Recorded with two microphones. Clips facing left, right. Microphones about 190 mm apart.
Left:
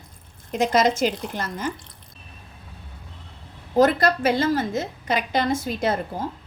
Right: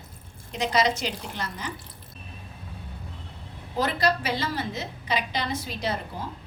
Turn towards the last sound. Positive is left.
turn(degrees=50)  # may be behind; listen again after turning